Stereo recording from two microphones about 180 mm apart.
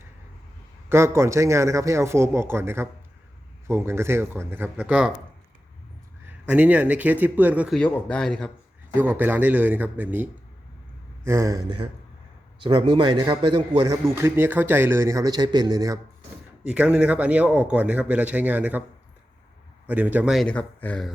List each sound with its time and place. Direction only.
0.9 s speech: 15° right (ahead or behind)
6.2 s speech: 10° right (ahead or behind)
7.8 s speech: 5° left (ahead or behind)
9.0 s speech: 10° right (ahead or behind)
11.3 s a man's voice: 15° right (ahead or behind)
16.6 s speech: 5° right (ahead or behind)
19.9 s speech: 10° right (ahead or behind); by 21.1 s 5° left (ahead or behind)